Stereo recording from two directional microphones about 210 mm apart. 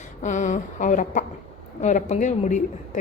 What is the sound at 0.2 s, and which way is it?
A woman's voice, 35° left (ahead or behind).